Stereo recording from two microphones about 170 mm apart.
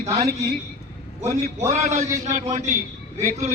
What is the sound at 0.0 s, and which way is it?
A woman's voice, 40° right (ahead or behind).